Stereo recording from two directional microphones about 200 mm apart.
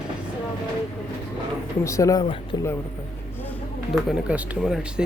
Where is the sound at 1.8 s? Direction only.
15° left (ahead or behind).